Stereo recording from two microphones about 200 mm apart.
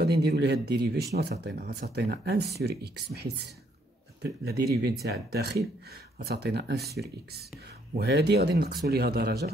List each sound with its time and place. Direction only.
0.0 s speech: 55° right (ahead or behind)
8.0 s speech: 55° right (ahead or behind)